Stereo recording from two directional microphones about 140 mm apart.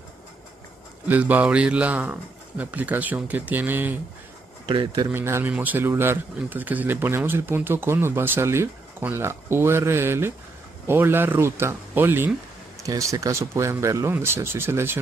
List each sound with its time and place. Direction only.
1.0 s speech: 10° right (ahead or behind)
4.6 s a man's voice: 35° right (ahead or behind)
5.1 s speech: 15° right (ahead or behind)